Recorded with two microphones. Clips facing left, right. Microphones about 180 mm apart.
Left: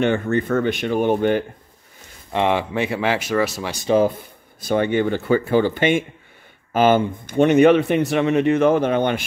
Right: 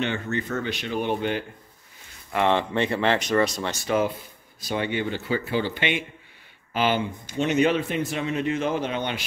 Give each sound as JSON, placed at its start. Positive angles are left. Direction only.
{"t": 0.0, "sound": "speech", "side_deg": 50}
{"t": 2.3, "sound": "speech", "side_deg": 10}
{"t": 3.8, "sound": "speech", "side_deg": 30}
{"t": 4.6, "sound": "speech", "side_deg": 50}